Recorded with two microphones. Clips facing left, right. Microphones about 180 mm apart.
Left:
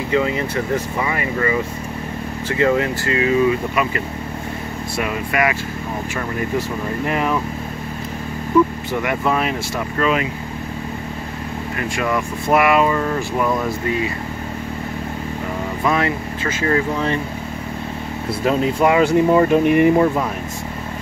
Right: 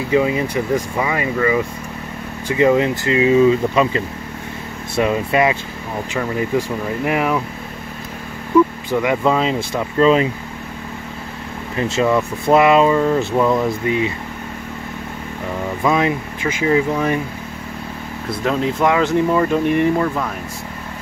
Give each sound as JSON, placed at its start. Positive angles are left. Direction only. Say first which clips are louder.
{"t": 0.1, "sound": "speech", "louder": "right 3 dB", "side_deg": -15}
{"t": 2.4, "sound": "speech", "louder": "right 3 dB", "side_deg": -20}
{"t": 7.1, "sound": "speech", "louder": "right 2 dB", "side_deg": -15}
{"t": 9.0, "sound": "speech", "louder": "right 3 dB", "side_deg": -20}
{"t": 11.7, "sound": "speech", "louder": "right 5 dB", "side_deg": -25}
{"t": 15.8, "sound": "speech", "louder": "right 2 dB", "side_deg": -15}
{"t": 18.4, "sound": "speech", "louder": "left 1 dB", "side_deg": 5}